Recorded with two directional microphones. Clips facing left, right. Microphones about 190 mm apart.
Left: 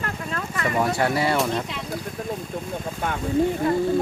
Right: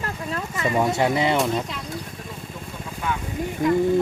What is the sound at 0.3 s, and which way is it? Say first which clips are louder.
Speech: right 1 dB; 20° right (ahead or behind).